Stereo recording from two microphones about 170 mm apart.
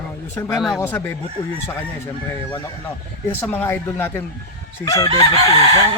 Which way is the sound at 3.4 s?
10° left (ahead or behind).